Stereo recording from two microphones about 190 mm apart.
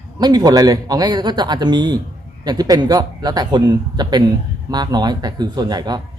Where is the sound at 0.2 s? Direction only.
20° right (ahead or behind).